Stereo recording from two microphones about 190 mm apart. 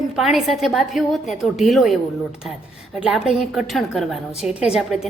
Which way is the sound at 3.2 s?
Centre (ahead or behind).